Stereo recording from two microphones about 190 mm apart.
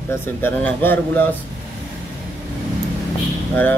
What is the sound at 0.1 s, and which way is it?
Speech, 10° left (ahead or behind).